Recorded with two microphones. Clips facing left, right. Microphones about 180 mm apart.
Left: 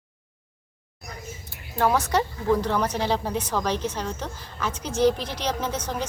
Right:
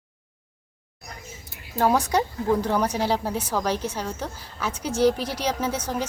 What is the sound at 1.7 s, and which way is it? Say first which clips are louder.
Speech: right 1 dB; 10° right (ahead or behind).